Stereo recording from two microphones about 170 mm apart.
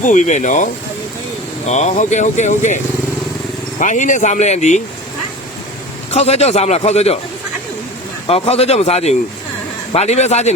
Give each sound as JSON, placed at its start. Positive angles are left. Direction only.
{"t": 0.0, "sound": "speech", "side_deg": 45}
{"t": 6.1, "sound": "a man's voice", "side_deg": 40}
{"t": 8.3, "sound": "a man's voice", "side_deg": 35}